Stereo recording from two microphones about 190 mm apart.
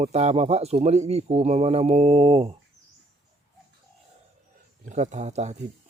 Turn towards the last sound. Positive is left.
turn(degrees=-35)  # may be behind; listen again after turning